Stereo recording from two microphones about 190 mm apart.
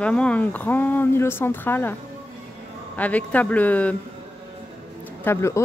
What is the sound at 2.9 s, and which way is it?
A woman's voice, 10° left (ahead or behind).